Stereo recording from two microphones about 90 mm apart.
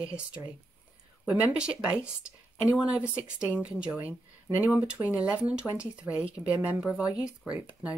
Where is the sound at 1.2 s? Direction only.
15° right (ahead or behind).